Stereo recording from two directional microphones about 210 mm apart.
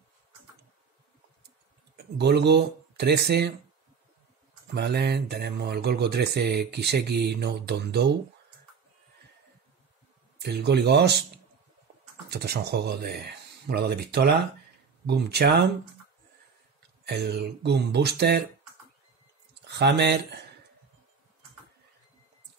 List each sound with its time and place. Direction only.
2.1 s speech: 50° right (ahead or behind)
4.7 s speech: 50° right (ahead or behind)
10.4 s speech: 50° right (ahead or behind)
12.3 s speech: 50° right (ahead or behind)
17.0 s speech: 50° right (ahead or behind)
19.6 s speech: 55° right (ahead or behind)